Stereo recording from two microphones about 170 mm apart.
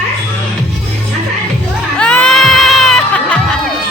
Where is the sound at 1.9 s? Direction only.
5° left (ahead or behind).